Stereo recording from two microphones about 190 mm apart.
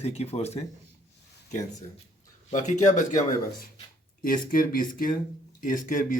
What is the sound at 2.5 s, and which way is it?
Speech, 40° left (ahead or behind).